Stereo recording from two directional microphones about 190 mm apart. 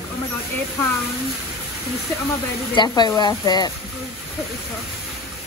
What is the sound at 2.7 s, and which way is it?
Speech, 20° left (ahead or behind).